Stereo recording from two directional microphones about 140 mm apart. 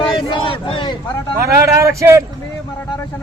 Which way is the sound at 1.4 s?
20° right (ahead or behind).